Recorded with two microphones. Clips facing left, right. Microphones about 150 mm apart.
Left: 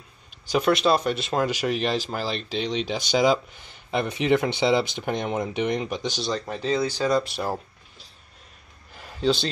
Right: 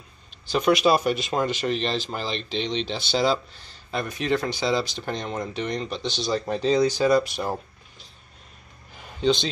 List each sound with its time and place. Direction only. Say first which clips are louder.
0.5 s speech: right 1 dB; centre (ahead or behind)
6.7 s speech: right 3 dB; 15° right (ahead or behind); by 7.6 s centre (ahead or behind)
8.9 s a sound: right 1 dB; centre (ahead or behind)